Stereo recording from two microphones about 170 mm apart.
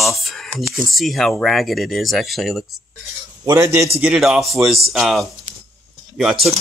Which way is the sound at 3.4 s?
20° right (ahead or behind).